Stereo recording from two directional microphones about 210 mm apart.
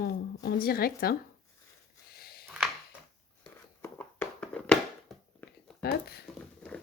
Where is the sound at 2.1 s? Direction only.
45° left (ahead or behind).